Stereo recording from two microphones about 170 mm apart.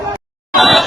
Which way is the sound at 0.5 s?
Centre (ahead or behind).